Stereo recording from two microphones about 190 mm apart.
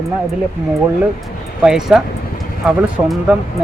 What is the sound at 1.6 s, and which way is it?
Speech, 5° right (ahead or behind).